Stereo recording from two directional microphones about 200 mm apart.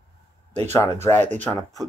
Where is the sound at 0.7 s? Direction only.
10° left (ahead or behind).